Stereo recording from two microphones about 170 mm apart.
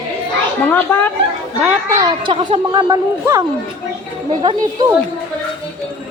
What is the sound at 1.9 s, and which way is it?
Speech, 25° right (ahead or behind).